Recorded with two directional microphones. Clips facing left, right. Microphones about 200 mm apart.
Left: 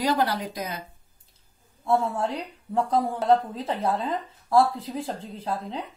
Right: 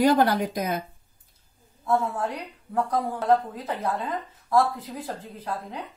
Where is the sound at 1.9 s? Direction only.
25° left (ahead or behind).